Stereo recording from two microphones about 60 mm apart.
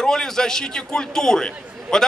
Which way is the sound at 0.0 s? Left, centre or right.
Centre.